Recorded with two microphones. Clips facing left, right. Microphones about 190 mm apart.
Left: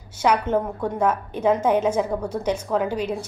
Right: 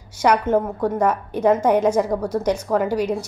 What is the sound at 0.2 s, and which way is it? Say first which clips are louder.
A woman's voice: right 3 dB; 10° right (ahead or behind).